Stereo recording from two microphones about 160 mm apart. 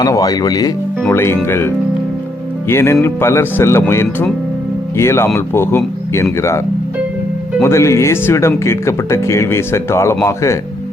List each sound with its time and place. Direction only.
0.0 s speech: 20° left (ahead or behind)
7.6 s speech: 15° left (ahead or behind)